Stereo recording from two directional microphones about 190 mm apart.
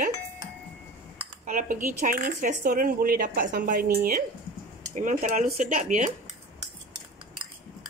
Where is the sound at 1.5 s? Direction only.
45° right (ahead or behind).